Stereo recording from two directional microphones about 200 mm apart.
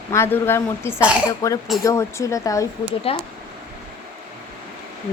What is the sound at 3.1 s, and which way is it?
Speech, 30° left (ahead or behind).